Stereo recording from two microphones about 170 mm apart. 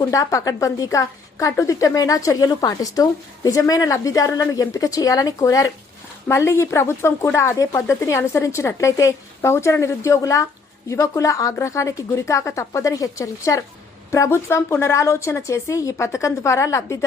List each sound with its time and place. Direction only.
0.1 s a woman's voice: 20° left (ahead or behind)